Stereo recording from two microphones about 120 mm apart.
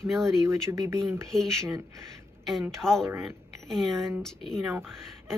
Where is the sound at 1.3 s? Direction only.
5° left (ahead or behind).